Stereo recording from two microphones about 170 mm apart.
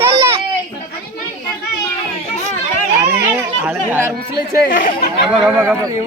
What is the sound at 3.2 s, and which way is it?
Chatter, 10° right (ahead or behind).